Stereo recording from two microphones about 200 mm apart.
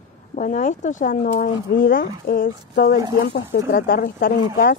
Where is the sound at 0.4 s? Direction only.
40° left (ahead or behind).